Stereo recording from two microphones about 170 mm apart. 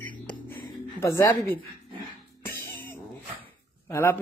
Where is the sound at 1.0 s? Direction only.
15° left (ahead or behind).